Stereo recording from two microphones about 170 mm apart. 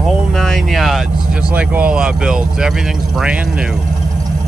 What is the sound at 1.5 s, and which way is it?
Speech, 10° right (ahead or behind).